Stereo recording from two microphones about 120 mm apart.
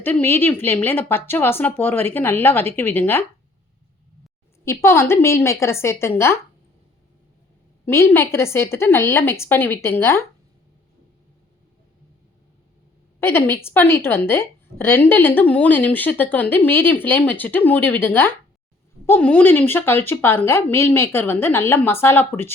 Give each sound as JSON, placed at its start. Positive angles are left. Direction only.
{"t": 0.0, "sound": "a woman's voice", "side_deg": 15}
{"t": 4.6, "sound": "a woman's voice", "side_deg": 20}
{"t": 7.9, "sound": "a woman's voice", "side_deg": 20}
{"t": 13.1, "sound": "a woman's voice", "side_deg": 20}